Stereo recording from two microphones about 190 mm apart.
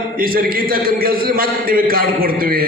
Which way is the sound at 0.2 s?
50° right (ahead or behind).